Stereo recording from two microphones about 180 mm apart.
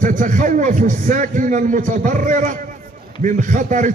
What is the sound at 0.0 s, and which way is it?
A man's voice, 45° right (ahead or behind).